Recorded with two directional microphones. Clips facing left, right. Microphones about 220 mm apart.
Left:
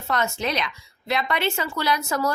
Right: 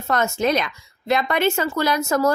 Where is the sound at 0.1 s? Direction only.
45° right (ahead or behind).